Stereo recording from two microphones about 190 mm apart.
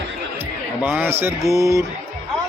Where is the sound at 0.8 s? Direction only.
10° right (ahead or behind).